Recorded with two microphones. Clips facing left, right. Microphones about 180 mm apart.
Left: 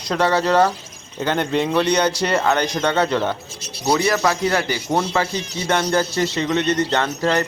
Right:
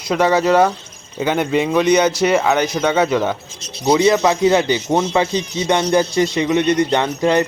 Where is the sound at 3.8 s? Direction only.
20° right (ahead or behind).